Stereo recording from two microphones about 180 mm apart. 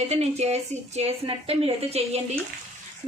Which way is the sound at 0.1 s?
35° right (ahead or behind).